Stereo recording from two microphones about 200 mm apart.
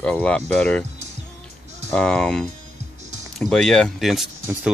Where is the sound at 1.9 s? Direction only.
5° left (ahead or behind).